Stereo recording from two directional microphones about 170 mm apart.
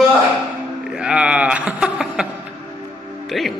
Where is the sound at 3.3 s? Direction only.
Centre (ahead or behind).